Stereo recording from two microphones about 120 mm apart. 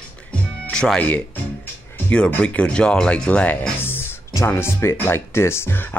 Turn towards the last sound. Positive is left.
turn(degrees=20)  # may be behind; listen again after turning